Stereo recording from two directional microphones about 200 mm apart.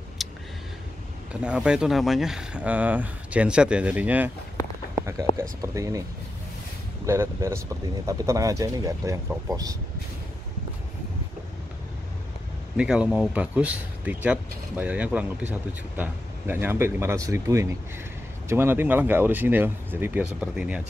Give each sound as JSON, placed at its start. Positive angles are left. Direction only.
{"t": 0.2, "sound": "a sound", "side_deg": 0}
{"t": 1.3, "sound": "speech", "side_deg": -5}
{"t": 4.9, "sound": "a sound", "side_deg": -15}
{"t": 5.4, "sound": "speech", "side_deg": -15}
{"t": 7.1, "sound": "speech", "side_deg": -15}
{"t": 12.7, "sound": "speech", "side_deg": -5}